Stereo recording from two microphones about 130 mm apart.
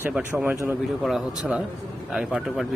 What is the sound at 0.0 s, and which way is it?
Speech, 10° right (ahead or behind).